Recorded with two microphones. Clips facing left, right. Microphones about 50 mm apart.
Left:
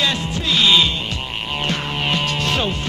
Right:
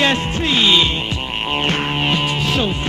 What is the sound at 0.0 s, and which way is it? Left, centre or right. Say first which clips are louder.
Music: right 4 dB; right.